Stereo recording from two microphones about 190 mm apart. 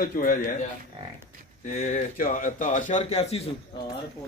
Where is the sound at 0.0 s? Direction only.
50° left (ahead or behind).